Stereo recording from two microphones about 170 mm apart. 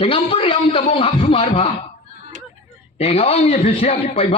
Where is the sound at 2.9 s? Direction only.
35° left (ahead or behind).